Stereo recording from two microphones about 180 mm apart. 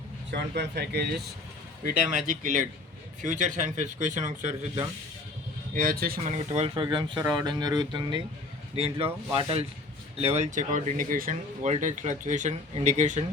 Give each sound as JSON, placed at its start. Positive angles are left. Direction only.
{"t": 0.3, "sound": "speech", "side_deg": -70}
{"t": 1.8, "sound": "speech", "side_deg": -50}
{"t": 5.7, "sound": "speech", "side_deg": -50}
{"t": 6.3, "sound": "speech", "side_deg": -35}
{"t": 6.8, "sound": "speech", "side_deg": -25}